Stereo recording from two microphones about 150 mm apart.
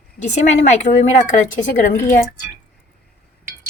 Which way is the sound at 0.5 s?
50° left (ahead or behind).